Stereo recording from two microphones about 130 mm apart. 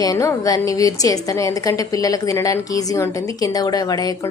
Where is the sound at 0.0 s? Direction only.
25° left (ahead or behind).